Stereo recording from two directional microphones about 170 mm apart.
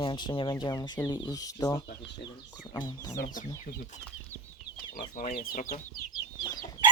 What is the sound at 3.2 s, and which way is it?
Speech, 50° left (ahead or behind).